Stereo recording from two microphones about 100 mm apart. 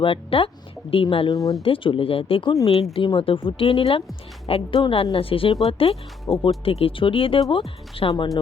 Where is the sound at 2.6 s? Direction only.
90° left.